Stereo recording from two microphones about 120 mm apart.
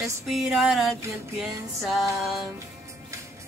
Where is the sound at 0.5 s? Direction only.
Centre (ahead or behind).